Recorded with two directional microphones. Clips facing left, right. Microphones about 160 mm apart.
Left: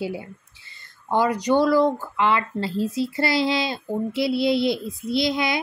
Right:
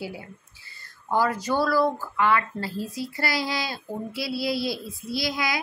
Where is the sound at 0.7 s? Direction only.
20° left (ahead or behind).